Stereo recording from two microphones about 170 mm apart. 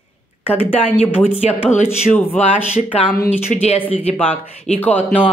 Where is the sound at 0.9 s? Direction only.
40° left (ahead or behind).